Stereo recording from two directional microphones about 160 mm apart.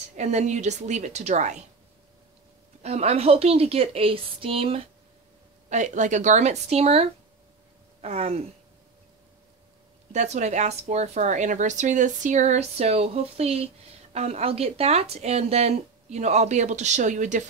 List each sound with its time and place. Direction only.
0.1 s speech: 45° right (ahead or behind)
2.8 s a woman's voice: 40° right (ahead or behind)
5.7 s a woman's voice: 50° right (ahead or behind)
10.1 s speech: 45° right (ahead or behind)